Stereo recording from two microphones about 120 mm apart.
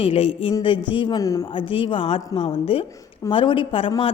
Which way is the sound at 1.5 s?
45° left (ahead or behind).